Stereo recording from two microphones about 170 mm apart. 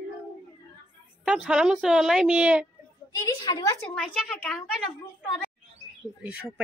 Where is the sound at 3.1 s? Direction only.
20° left (ahead or behind).